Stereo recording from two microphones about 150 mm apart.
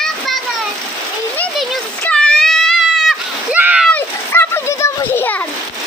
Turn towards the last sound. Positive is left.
turn(degrees=15)  # may be behind; listen again after turning